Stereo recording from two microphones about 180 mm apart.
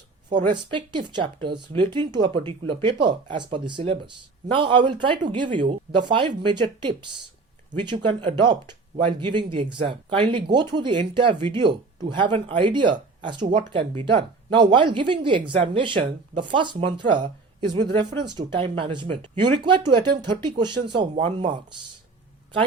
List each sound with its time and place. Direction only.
0.3 s speech: 25° right (ahead or behind)